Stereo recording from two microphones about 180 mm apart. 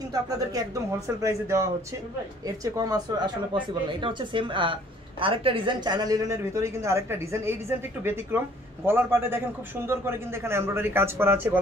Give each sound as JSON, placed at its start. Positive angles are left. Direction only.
{"t": 0.1, "sound": "speech", "side_deg": -20}